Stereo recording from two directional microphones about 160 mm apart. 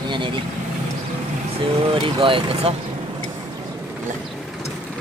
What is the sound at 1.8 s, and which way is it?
Speech, 35° right (ahead or behind).